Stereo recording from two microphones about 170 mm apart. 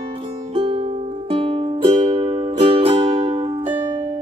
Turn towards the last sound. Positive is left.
turn(degrees=-30)  # may be behind; listen again after turning